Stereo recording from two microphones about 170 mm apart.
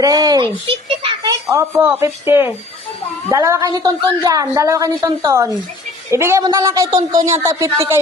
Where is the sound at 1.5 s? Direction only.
15° right (ahead or behind).